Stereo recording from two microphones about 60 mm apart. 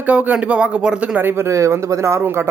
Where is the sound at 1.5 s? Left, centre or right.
Right.